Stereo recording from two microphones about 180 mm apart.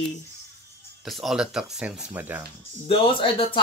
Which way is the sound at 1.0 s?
Centre (ahead or behind).